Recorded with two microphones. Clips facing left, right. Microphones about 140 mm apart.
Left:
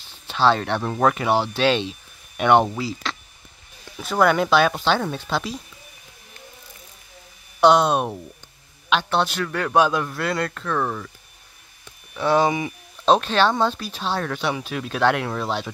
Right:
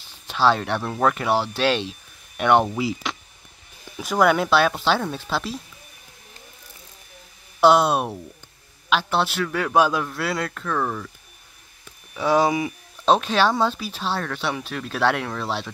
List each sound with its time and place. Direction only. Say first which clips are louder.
0.3 s speech: left 1 dB; 5° right (ahead or behind)
2.8 s speech: right 2 dB; 15° right (ahead or behind)
7.6 s speech: even; 5° right (ahead or behind)